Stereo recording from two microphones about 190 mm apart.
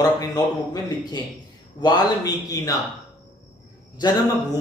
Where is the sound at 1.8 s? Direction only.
20° left (ahead or behind).